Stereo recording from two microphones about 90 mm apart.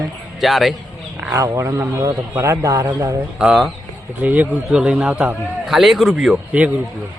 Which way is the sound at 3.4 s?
5° right (ahead or behind).